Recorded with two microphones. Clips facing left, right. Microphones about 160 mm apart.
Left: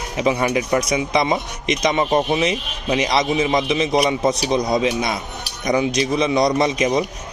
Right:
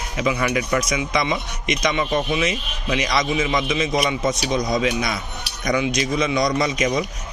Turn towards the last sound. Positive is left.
turn(degrees=30)  # may be behind; listen again after turning